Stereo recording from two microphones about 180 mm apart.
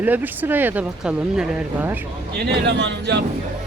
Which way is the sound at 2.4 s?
70° right (ahead or behind).